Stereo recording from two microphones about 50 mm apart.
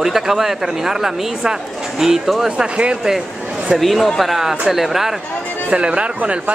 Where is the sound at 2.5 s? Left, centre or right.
Right.